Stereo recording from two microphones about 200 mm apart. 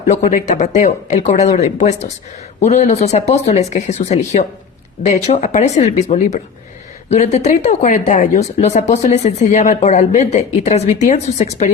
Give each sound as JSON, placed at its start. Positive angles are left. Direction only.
{"t": 0.1, "sound": "speech", "side_deg": 40}